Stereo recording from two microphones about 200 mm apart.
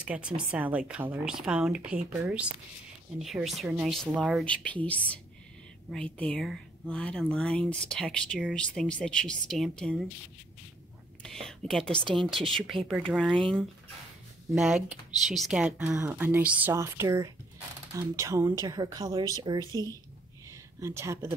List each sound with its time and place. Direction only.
0.0 s a woman's voice: 5° right (ahead or behind)
11.2 s speech: centre (ahead or behind); by 21.4 s 15° right (ahead or behind)